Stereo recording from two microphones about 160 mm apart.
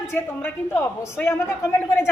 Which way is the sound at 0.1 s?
15° left (ahead or behind).